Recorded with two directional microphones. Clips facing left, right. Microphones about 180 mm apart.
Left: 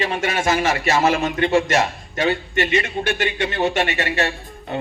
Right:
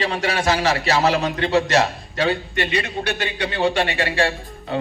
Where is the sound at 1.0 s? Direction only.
50° left (ahead or behind).